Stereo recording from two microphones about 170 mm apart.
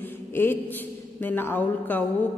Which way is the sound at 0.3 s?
10° left (ahead or behind).